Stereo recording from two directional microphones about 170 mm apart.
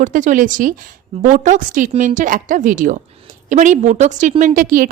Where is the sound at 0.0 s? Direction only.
50° right (ahead or behind).